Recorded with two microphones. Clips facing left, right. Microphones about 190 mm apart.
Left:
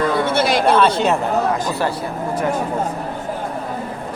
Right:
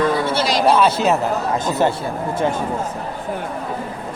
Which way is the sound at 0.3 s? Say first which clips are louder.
Left 2 dB; 55° left (ahead or behind).